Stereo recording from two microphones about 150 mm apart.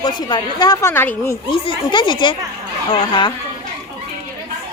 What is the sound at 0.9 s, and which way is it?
Speech, 15° left (ahead or behind).